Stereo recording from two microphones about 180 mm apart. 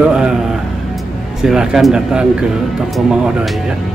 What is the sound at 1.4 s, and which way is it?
Speech, 5° right (ahead or behind).